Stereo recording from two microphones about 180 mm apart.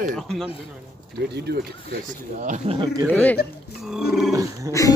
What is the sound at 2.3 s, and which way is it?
Speech, 40° right (ahead or behind).